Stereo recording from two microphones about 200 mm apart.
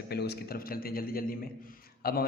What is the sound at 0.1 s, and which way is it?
A man's voice, 55° left (ahead or behind).